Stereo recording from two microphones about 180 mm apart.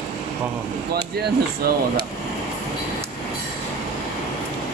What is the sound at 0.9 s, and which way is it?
Speech, 60° right (ahead or behind).